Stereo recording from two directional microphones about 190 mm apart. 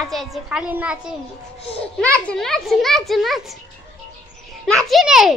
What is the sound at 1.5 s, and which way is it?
Speech, 30° left (ahead or behind).